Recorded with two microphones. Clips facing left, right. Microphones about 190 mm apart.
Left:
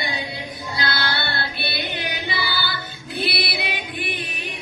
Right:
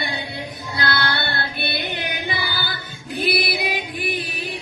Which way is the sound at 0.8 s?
55° right (ahead or behind).